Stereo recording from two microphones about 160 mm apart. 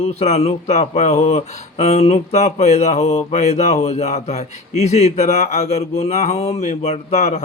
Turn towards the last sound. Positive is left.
turn(degrees=45)  # may be behind; listen again after turning